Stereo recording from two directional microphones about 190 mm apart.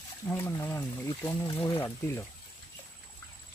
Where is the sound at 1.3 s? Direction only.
25° left (ahead or behind).